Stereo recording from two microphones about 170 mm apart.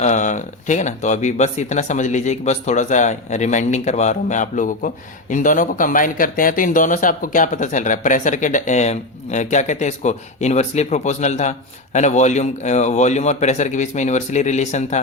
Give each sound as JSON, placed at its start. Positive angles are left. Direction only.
{"t": 0.0, "sound": "speech", "side_deg": 45}